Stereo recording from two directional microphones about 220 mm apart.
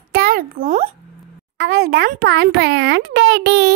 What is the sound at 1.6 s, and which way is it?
A child's voice, 45° right (ahead or behind).